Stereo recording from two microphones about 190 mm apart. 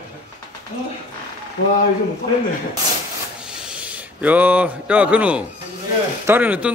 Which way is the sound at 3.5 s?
5° right (ahead or behind).